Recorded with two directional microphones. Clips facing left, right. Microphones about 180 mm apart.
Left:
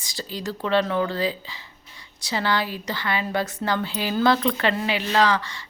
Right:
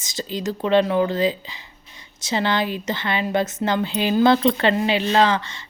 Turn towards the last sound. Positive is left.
turn(degrees=-25)  # may be behind; listen again after turning